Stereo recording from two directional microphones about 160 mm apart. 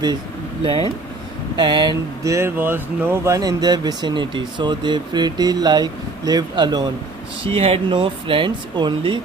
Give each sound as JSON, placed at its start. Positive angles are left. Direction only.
{"t": 0.6, "sound": "speech", "side_deg": -35}